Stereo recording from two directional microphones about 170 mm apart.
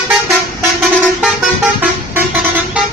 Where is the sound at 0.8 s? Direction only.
Centre (ahead or behind).